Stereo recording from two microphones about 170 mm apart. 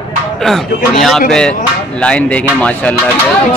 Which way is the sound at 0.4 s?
Centre (ahead or behind).